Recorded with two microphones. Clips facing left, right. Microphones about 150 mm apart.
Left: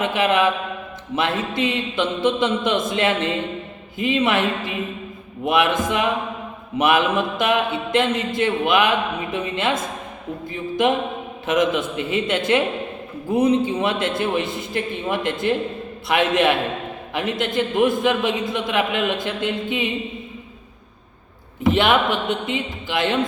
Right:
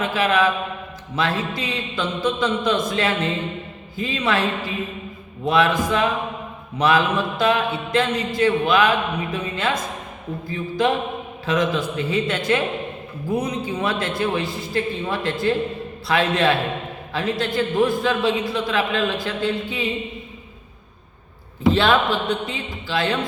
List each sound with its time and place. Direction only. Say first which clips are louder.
0.0 s mantra: left 1 dB; 20° left (ahead or behind)
11.4 s mantra: left 2 dB; 20° left (ahead or behind)
21.7 s mantra: even; 20° left (ahead or behind)